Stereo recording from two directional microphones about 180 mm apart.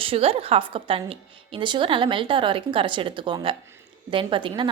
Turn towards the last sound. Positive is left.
turn(degrees=-30)  # may be behind; listen again after turning